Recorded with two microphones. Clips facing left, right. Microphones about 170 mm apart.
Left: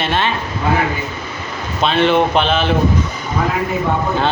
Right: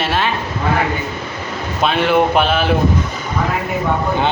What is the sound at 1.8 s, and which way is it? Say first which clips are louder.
Speech: left 1 dB; 10° right (ahead or behind).